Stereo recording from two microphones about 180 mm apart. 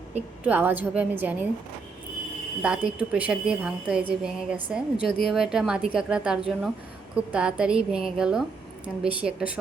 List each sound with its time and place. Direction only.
0.1 s a woman's voice: 10° right (ahead or behind)
2.6 s a woman's voice: 5° right (ahead or behind)
4.9 s speech: 55° left (ahead or behind)
5.3 s a woman's voice: 5° right (ahead or behind)